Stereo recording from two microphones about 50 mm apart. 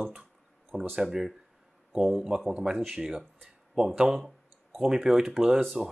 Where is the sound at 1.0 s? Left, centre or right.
Centre.